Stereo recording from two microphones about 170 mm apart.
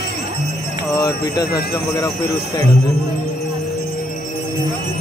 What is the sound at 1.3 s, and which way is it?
Speech, 65° left (ahead or behind).